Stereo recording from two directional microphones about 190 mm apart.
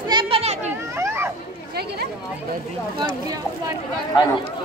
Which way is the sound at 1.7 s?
55° right (ahead or behind).